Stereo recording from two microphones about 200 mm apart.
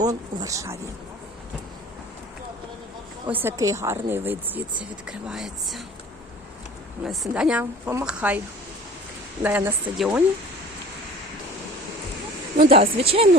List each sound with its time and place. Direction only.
0.0 s a woman's voice: 15° right (ahead or behind)
3.2 s a woman's voice: 10° right (ahead or behind)
7.0 s speech: centre (ahead or behind)
9.4 s a woman's voice: 10° right (ahead or behind)
12.5 s speech: 30° right (ahead or behind)